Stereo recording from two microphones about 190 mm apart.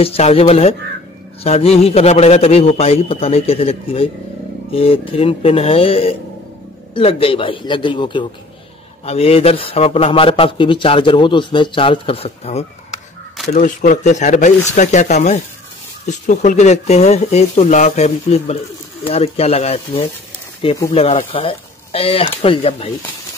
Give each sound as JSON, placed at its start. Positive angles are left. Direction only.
{"t": 0.0, "sound": "a man's voice", "side_deg": 30}